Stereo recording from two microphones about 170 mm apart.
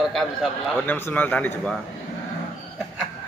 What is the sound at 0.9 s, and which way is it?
Speech, 10° left (ahead or behind).